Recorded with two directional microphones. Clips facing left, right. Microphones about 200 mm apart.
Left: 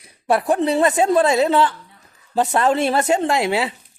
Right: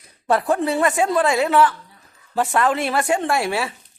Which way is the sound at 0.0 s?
10° left (ahead or behind).